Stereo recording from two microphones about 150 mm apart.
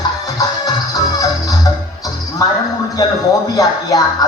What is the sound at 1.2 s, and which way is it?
Music, 25° left (ahead or behind).